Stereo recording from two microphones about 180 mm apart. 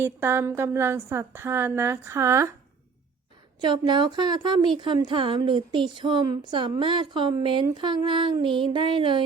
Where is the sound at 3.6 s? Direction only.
25° right (ahead or behind).